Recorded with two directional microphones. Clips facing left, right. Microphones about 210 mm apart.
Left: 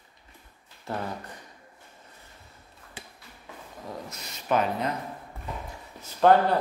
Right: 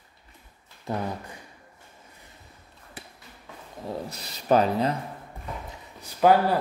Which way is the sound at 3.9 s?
35° right (ahead or behind).